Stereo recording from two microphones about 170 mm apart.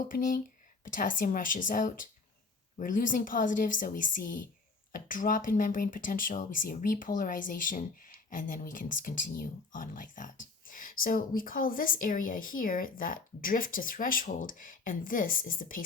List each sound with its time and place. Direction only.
0.1 s speech: 55° left (ahead or behind)